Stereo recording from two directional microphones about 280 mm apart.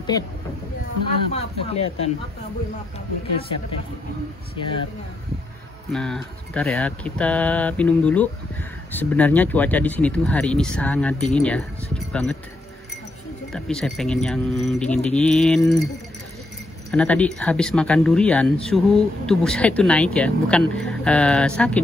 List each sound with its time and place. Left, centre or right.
1.3 s speech: left
4.6 s speech: centre
5.9 s speech: centre
13.5 s speech: centre
16.9 s speech: centre